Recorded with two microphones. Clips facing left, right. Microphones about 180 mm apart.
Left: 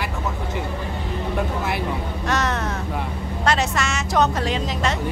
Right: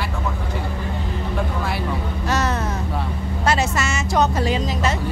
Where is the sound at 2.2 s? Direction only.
Centre (ahead or behind).